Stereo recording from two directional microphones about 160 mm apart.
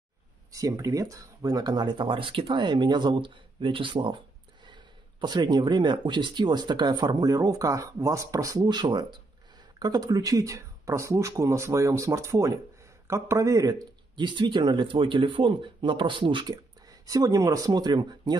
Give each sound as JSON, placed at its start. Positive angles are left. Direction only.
{"t": 0.5, "sound": "speech", "side_deg": -20}
{"t": 5.2, "sound": "speech", "side_deg": -25}